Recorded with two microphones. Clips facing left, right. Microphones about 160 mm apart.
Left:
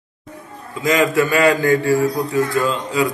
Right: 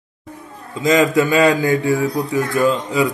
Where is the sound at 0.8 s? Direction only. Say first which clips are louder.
Right 2 dB; 20° right (ahead or behind).